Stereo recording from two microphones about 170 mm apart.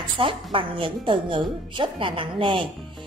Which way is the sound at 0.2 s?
30° right (ahead or behind).